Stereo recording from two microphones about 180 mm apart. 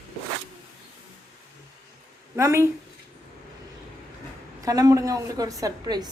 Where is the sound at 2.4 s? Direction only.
15° right (ahead or behind).